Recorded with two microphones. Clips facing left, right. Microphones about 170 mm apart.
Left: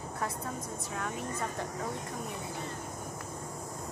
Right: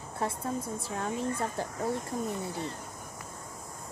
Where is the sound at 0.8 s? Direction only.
30° right (ahead or behind).